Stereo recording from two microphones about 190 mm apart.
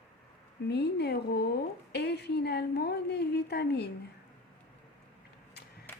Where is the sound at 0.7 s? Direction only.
60° left (ahead or behind).